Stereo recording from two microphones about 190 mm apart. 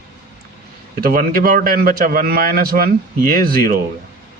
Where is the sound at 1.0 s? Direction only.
50° right (ahead or behind).